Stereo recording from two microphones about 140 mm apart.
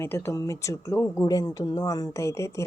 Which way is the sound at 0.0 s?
20° left (ahead or behind).